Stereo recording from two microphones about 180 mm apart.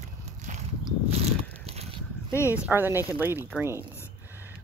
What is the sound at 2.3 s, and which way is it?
Speech, 15° left (ahead or behind).